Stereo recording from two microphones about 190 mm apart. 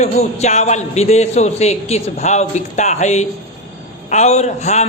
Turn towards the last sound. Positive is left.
turn(degrees=35)  # may be behind; listen again after turning